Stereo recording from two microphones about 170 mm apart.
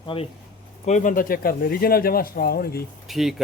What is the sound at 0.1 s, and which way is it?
Speech, 30° left (ahead or behind).